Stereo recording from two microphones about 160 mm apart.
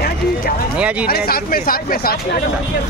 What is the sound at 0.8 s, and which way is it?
Speech, 10° right (ahead or behind).